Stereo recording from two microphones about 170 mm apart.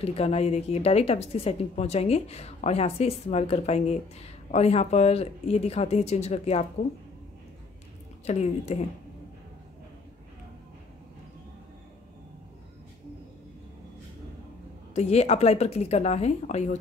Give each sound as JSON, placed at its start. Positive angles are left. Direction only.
{"t": 0.0, "sound": "speech", "side_deg": 35}
{"t": 8.3, "sound": "speech", "side_deg": 40}
{"t": 15.0, "sound": "speech", "side_deg": 40}